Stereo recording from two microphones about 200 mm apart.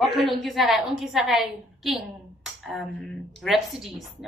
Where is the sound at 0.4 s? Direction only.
Centre (ahead or behind).